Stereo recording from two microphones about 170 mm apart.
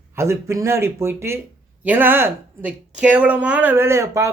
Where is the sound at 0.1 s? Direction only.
15° right (ahead or behind).